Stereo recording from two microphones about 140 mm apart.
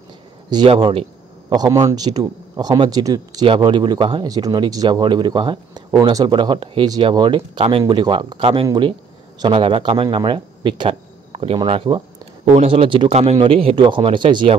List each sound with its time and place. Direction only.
0.5 s speech: 30° right (ahead or behind)
1.5 s speech: 25° right (ahead or behind)